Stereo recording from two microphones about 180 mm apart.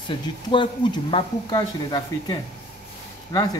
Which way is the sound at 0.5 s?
25° left (ahead or behind).